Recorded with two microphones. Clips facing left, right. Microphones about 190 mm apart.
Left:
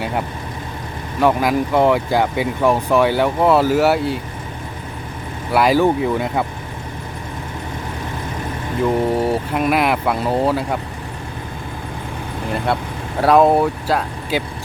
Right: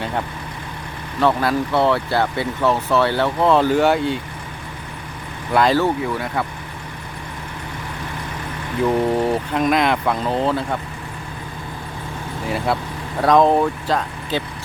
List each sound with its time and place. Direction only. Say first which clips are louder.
1.2 s speech: left 2 dB; 15° left (ahead or behind)
5.5 s speech: left 2 dB; 10° left (ahead or behind)
6.0 s speech: left 4 dB; 20° left (ahead or behind)
9.1 s speech: left 1 dB; 5° left (ahead or behind)
12.5 s speech: left 1 dB; 5° right (ahead or behind)
13.2 s speech: left 2 dB; 10° left (ahead or behind)